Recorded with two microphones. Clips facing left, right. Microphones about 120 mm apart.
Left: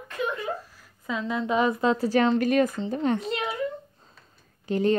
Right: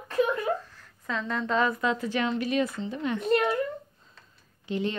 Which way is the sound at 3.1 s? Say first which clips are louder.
Right 5 dB; 50° right (ahead or behind).